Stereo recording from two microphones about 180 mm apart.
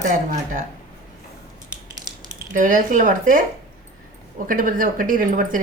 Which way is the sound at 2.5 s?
45° right (ahead or behind).